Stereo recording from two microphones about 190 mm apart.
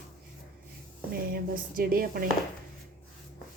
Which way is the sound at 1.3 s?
50° right (ahead or behind).